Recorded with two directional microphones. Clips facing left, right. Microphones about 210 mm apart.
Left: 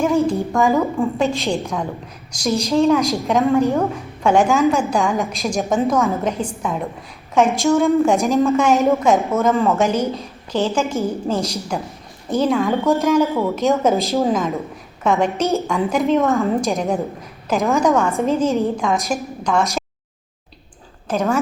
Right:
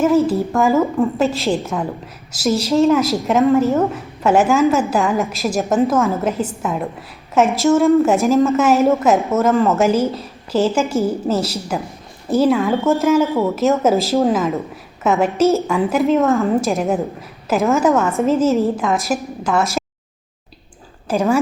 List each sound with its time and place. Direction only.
0.0 s a woman's voice: 5° right (ahead or behind)
21.1 s speech: 10° right (ahead or behind)